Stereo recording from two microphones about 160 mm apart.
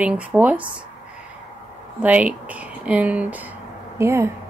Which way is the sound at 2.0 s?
10° right (ahead or behind).